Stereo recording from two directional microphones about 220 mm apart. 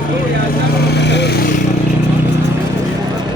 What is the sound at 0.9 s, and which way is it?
Speech, 50° left (ahead or behind).